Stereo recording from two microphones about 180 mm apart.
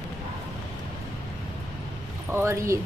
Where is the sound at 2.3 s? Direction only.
15° right (ahead or behind).